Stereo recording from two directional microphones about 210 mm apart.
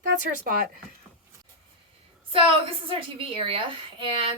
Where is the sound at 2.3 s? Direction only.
25° right (ahead or behind).